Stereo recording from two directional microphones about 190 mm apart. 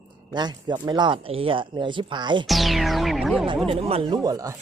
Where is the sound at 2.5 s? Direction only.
Centre (ahead or behind).